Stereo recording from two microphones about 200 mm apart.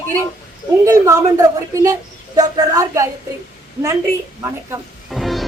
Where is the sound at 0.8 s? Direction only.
15° right (ahead or behind).